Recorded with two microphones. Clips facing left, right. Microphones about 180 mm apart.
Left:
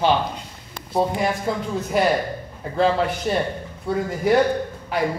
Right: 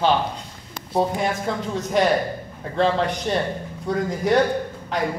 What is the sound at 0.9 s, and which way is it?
A man's voice, centre (ahead or behind).